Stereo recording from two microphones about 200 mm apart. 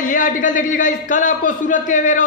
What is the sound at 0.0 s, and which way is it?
A man's voice, 40° left (ahead or behind).